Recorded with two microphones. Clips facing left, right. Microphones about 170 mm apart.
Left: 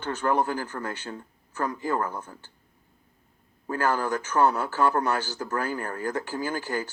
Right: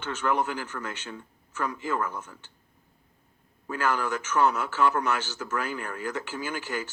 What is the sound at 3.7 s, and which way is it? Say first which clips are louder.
A man's voice: left 2 dB; 35° left (ahead or behind).